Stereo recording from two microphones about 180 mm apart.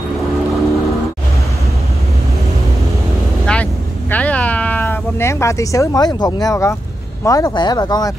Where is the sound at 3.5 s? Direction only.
5° left (ahead or behind).